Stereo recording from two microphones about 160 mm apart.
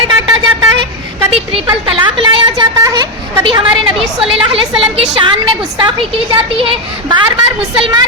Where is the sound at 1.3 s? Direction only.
35° right (ahead or behind).